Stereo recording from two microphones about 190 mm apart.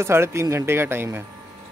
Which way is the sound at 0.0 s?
15° right (ahead or behind).